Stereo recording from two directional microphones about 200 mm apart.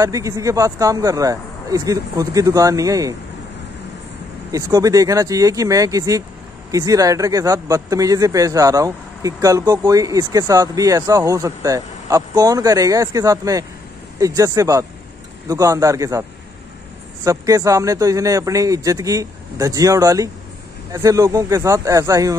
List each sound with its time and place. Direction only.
0.0 s speech: 15° right (ahead or behind)
4.5 s speech: 15° right (ahead or behind)